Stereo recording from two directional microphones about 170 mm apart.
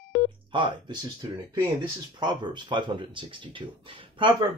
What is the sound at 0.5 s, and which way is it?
Speech, 30° right (ahead or behind).